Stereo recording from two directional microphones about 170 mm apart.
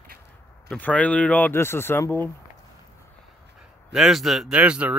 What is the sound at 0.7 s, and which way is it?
Speech, 10° left (ahead or behind).